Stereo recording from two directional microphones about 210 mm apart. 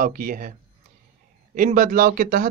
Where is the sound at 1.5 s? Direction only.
35° right (ahead or behind).